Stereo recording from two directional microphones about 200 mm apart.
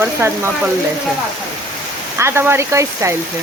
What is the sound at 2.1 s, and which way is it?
Speech, 15° right (ahead or behind).